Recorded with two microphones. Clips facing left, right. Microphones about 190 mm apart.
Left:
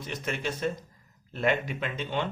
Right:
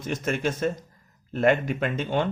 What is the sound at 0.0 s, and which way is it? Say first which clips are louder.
Speech: right 6 dB; 50° right (ahead or behind).